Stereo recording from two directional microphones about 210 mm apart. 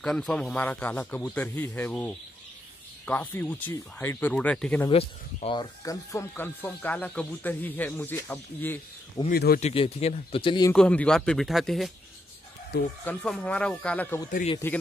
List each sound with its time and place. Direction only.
0.0 s speech: 5° left (ahead or behind)
4.8 s speech: 25° left (ahead or behind); by 9.2 s 10° left (ahead or behind)
9.3 s speech: 45° left (ahead or behind)
9.6 s a man's voice: 30° left (ahead or behind)
10.7 s a man's voice: 5° left (ahead or behind)
13.0 s a man's voice: 5° left (ahead or behind)